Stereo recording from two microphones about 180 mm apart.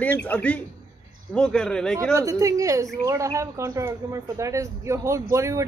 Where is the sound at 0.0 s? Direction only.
10° left (ahead or behind).